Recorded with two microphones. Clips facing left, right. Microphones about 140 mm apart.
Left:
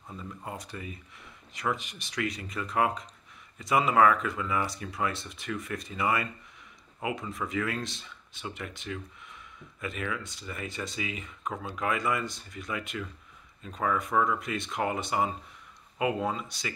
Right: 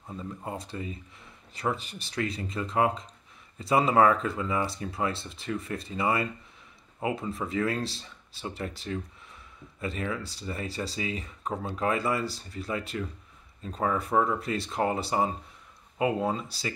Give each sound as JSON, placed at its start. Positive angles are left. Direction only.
{"t": 0.5, "sound": "speech", "side_deg": -25}